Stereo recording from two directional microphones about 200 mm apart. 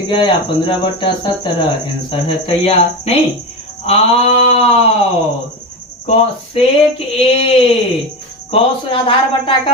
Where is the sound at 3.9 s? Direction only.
30° left (ahead or behind).